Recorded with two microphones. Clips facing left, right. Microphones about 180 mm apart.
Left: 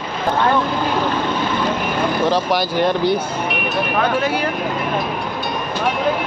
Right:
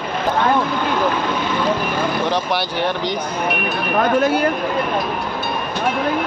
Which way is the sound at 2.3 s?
10° left (ahead or behind).